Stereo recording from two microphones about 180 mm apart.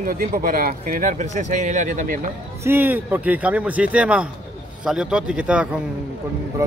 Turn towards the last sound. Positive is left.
turn(degrees=-15)  # may be behind; listen again after turning